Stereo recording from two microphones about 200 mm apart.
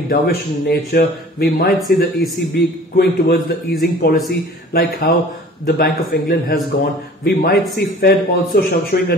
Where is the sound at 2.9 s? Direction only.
50° left (ahead or behind).